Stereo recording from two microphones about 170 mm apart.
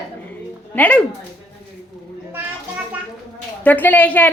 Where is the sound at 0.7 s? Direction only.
10° left (ahead or behind).